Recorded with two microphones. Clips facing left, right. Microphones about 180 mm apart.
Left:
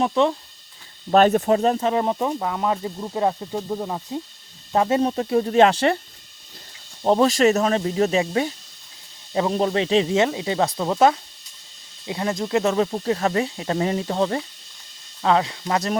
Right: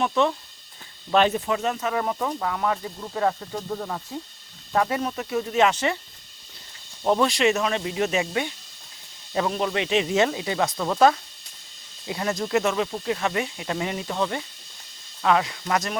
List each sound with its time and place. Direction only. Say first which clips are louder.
0.0 s speech: left 3 dB; 30° left (ahead or behind)
1.3 s speech: left 7 dB; 40° left (ahead or behind)
7.0 s speech: left 4 dB; 35° left (ahead or behind)